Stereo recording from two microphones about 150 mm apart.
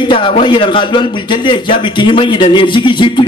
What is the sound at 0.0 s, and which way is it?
A man's voice, 35° left (ahead or behind).